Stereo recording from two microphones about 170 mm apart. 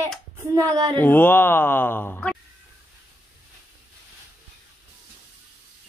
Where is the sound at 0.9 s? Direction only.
10° left (ahead or behind).